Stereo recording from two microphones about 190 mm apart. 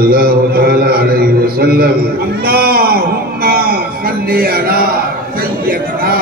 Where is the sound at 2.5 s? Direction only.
55° right (ahead or behind).